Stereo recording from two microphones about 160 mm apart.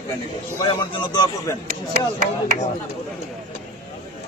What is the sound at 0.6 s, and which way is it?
Speech, 30° left (ahead or behind).